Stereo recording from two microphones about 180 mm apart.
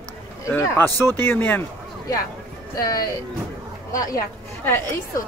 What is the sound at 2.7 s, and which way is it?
Speech, 20° left (ahead or behind).